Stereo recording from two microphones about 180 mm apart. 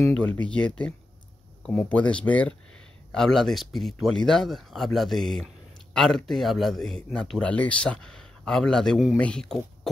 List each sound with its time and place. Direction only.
0.0 s speech: 5° left (ahead or behind)